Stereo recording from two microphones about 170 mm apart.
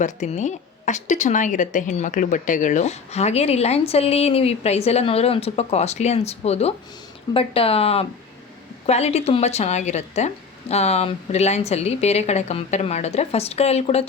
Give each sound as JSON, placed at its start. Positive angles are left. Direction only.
{"t": 0.0, "sound": "a woman's voice", "side_deg": 45}